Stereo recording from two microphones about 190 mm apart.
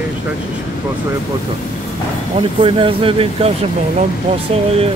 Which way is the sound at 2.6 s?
30° right (ahead or behind).